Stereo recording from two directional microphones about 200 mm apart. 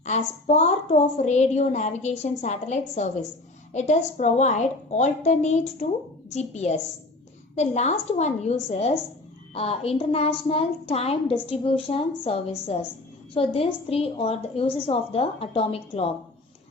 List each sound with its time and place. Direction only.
0.0 s a woman's voice: 35° left (ahead or behind)
9.6 s a woman's voice: 30° left (ahead or behind)